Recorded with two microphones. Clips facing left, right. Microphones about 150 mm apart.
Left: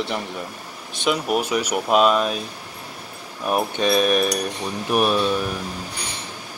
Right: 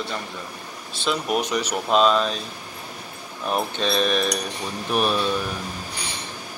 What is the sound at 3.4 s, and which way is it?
Speech, 10° left (ahead or behind).